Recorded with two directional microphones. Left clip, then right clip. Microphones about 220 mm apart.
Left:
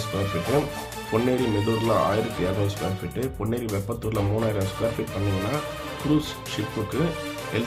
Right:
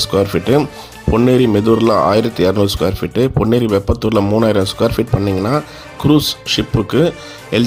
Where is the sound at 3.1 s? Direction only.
40° right (ahead or behind).